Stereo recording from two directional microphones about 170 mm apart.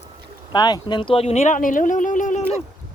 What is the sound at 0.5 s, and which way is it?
Speech, 25° left (ahead or behind).